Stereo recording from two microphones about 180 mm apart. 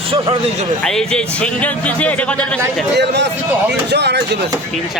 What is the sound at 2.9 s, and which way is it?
Speech, 70° right (ahead or behind).